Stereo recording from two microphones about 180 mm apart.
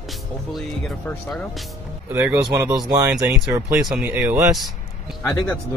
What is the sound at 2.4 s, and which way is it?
Speech, 15° right (ahead or behind).